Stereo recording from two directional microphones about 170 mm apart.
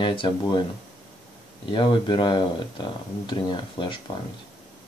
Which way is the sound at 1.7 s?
30° left (ahead or behind).